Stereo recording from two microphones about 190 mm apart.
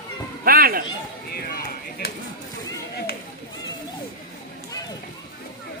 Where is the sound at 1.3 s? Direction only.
55° left (ahead or behind).